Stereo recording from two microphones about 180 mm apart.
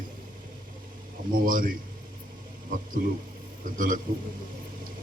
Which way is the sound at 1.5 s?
50° right (ahead or behind).